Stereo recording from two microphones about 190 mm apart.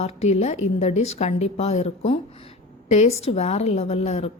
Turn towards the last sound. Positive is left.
turn(degrees=35)  # may be behind; listen again after turning